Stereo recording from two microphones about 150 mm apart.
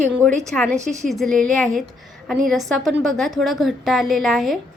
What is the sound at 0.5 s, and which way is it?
A woman's voice, 10° left (ahead or behind).